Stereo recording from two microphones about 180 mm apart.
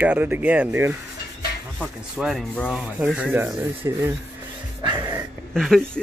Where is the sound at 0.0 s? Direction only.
10° right (ahead or behind).